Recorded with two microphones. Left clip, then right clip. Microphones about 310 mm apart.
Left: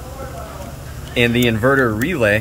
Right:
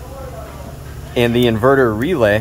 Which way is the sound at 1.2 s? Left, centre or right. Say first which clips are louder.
Right 2 dB; centre.